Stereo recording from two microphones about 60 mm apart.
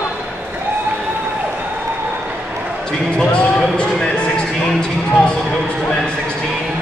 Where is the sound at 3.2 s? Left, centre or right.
Centre.